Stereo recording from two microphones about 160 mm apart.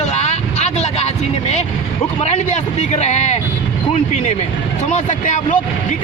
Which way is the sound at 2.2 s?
45° left (ahead or behind).